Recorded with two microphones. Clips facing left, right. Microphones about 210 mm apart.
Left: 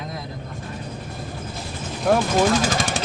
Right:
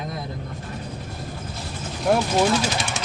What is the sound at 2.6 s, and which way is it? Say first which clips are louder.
Speech: left 3 dB; 90° left.